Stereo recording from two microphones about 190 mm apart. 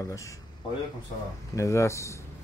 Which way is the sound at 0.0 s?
15° left (ahead or behind).